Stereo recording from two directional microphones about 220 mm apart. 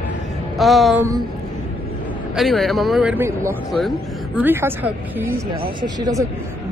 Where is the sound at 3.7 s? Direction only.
Centre (ahead or behind).